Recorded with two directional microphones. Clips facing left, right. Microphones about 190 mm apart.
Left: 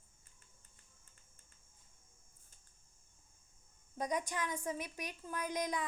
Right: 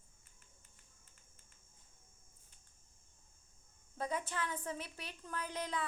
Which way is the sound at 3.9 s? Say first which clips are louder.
Left 2 dB; 15° left (ahead or behind).